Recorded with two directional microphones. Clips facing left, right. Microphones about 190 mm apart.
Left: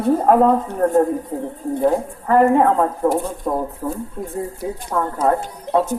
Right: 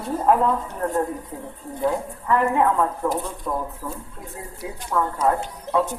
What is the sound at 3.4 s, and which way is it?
Speech, 35° left (ahead or behind).